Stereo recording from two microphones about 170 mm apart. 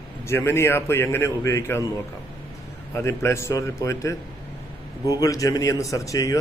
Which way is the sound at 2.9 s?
15° left (ahead or behind).